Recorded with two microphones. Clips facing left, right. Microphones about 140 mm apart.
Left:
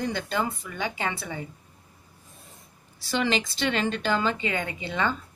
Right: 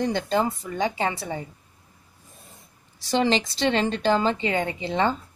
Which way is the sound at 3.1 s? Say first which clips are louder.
Right 4 dB; 35° right (ahead or behind).